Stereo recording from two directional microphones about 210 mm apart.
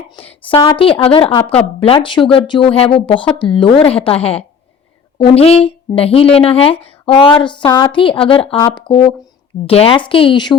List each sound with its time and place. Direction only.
0.2 s speech: 25° left (ahead or behind)